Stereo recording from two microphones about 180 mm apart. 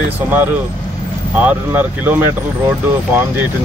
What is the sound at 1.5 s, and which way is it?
Speech, 10° right (ahead or behind).